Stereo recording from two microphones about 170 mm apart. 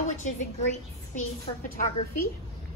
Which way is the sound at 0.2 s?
45° left (ahead or behind).